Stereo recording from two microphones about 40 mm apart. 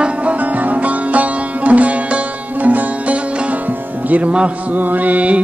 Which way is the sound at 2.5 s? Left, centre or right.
Right.